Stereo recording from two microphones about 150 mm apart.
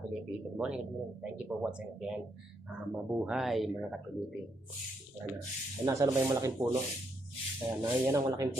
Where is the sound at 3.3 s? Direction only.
Centre (ahead or behind).